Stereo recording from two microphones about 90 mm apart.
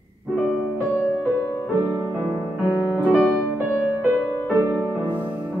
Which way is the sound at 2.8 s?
20° right (ahead or behind).